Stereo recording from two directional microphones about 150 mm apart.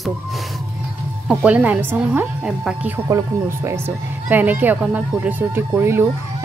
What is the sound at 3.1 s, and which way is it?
Speech, 20° right (ahead or behind).